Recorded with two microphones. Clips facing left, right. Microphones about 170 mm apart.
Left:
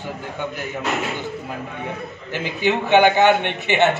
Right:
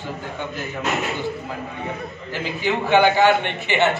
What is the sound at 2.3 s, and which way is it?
A man's voice, 20° left (ahead or behind).